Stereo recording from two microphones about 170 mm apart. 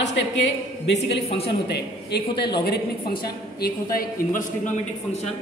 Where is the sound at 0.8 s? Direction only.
85° left.